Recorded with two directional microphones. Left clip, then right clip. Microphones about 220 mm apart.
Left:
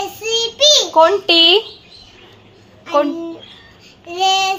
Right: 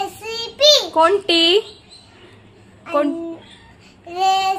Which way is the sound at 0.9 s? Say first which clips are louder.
Left 4 dB; 10° right (ahead or behind).